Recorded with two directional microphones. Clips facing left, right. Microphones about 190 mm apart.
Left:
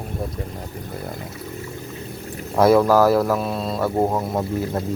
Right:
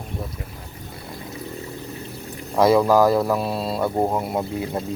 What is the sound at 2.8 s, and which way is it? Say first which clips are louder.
Speech: left 1 dB; 15° right (ahead or behind).